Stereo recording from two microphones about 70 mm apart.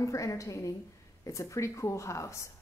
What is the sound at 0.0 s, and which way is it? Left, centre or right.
A woman's voice, left.